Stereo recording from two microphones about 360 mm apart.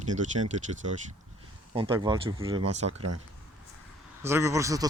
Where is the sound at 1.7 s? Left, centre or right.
Centre.